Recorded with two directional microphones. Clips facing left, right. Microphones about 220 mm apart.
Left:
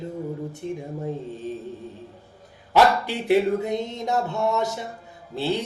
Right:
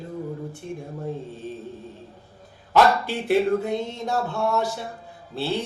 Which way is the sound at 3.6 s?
15° left (ahead or behind).